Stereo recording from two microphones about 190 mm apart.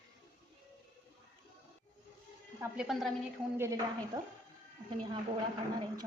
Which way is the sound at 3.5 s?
15° right (ahead or behind).